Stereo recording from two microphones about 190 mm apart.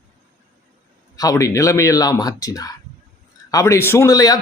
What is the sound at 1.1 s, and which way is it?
A man's voice, 20° left (ahead or behind).